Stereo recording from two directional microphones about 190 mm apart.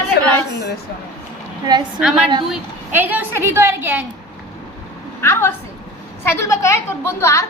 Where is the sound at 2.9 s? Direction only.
10° right (ahead or behind).